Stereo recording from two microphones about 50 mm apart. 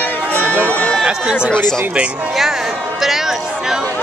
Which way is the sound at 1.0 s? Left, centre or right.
Centre.